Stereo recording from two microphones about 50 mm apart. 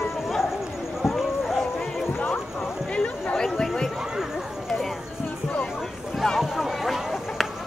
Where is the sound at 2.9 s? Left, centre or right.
Left.